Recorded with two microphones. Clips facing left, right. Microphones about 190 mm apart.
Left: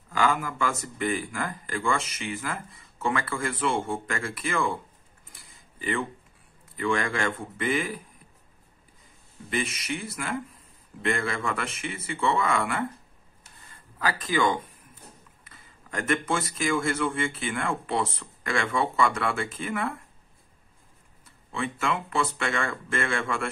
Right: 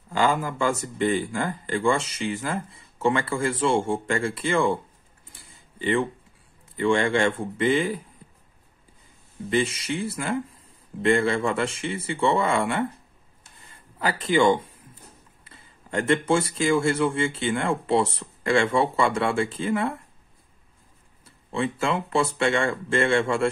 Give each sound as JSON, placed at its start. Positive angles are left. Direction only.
{"t": 0.1, "sound": "speech", "side_deg": -30}
{"t": 5.3, "sound": "a sound", "side_deg": -30}
{"t": 6.8, "sound": "speech", "side_deg": -30}
{"t": 9.5, "sound": "speech", "side_deg": -30}
{"t": 13.6, "sound": "a sound", "side_deg": -25}
{"t": 15.4, "sound": "speech", "side_deg": -30}
{"t": 21.5, "sound": "speech", "side_deg": -30}